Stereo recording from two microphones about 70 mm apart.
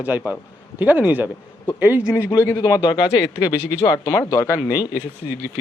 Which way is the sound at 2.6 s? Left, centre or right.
Left.